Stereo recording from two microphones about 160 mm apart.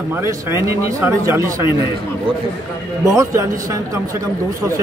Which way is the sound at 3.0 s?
20° right (ahead or behind).